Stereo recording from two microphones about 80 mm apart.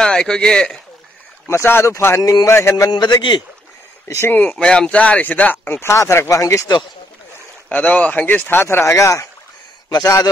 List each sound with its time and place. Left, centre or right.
0.0 s speech: centre
1.5 s speech: left
2.9 s a man's voice: left
4.1 s speech: left
4.6 s speech: centre; by 6.6 s left
7.7 s speech: centre; by 9.3 s left
9.8 s a man's voice: left